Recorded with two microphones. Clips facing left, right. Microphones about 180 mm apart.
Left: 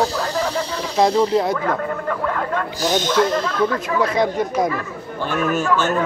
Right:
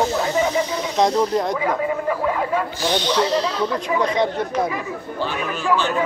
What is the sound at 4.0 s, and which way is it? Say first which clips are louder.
Speech: left 3 dB; 10° left (ahead or behind).